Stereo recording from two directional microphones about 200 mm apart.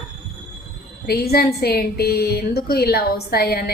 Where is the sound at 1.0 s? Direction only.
50° left (ahead or behind).